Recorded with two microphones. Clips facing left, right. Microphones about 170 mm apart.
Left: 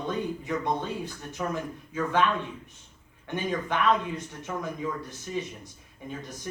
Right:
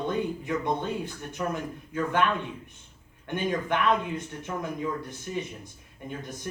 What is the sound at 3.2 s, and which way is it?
Speech, 55° right (ahead or behind).